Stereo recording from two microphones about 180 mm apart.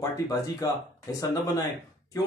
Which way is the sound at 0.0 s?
20° left (ahead or behind).